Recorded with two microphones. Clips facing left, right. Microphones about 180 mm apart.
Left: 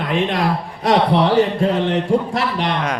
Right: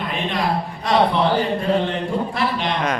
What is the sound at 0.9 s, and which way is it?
A man's voice, 80° left.